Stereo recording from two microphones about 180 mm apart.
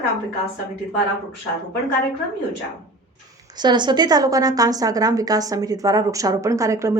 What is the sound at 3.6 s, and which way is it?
A woman's voice, 25° right (ahead or behind).